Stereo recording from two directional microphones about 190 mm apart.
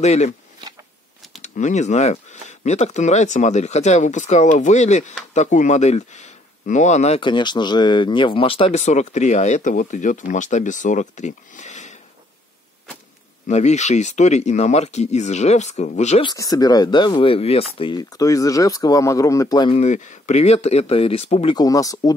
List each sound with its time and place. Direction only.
0.0 s speech: 35° left (ahead or behind)
1.4 s speech: 40° left (ahead or behind)
13.5 s speech: 35° left (ahead or behind)
16.3 s speech: 20° left (ahead or behind)
19.8 s speech: 40° left (ahead or behind)
21.5 s speech: 20° left (ahead or behind)